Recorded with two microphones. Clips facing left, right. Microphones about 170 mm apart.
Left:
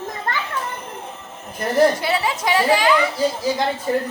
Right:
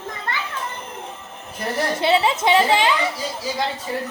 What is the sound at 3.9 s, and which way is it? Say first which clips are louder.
Speech: left 6 dB; 45° left (ahead or behind).